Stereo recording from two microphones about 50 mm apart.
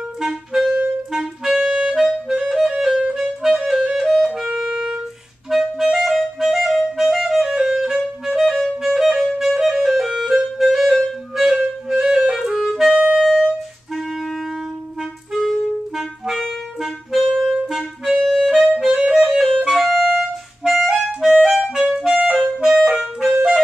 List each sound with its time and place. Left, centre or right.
0.2 s clarinet: centre
13.9 s clarinet: centre
16.0 s clarinet: centre
18.4 s music: centre
18.9 s music: centre
19.6 s clarinet: centre
21.7 s clarinet: centre
22.7 s clarinet: centre